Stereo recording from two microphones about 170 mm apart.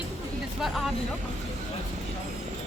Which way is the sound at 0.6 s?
Centre (ahead or behind).